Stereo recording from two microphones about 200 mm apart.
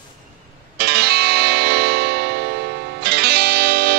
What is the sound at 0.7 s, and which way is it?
Music, 55° right (ahead or behind).